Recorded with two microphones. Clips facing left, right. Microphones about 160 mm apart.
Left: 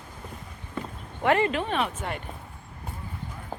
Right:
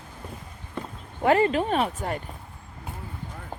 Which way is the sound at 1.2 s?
35° right (ahead or behind).